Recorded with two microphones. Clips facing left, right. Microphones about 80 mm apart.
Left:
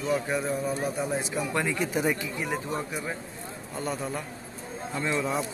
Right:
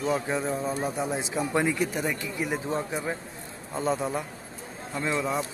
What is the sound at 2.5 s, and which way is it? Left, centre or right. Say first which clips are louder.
Speech: right 3 dB; right.